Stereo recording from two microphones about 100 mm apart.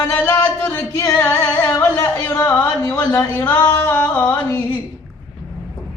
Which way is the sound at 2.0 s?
20° left (ahead or behind).